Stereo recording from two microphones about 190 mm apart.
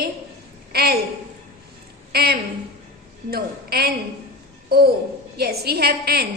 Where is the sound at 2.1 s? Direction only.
55° right (ahead or behind).